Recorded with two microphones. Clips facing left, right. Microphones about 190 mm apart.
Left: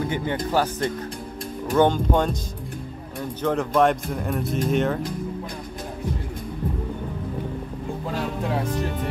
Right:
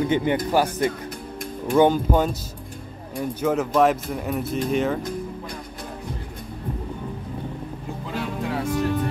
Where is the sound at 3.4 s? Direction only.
5° right (ahead or behind).